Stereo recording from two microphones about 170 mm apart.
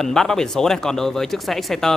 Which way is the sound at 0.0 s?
5° left (ahead or behind).